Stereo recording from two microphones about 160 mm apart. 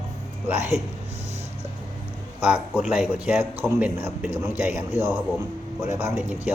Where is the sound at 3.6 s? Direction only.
15° right (ahead or behind).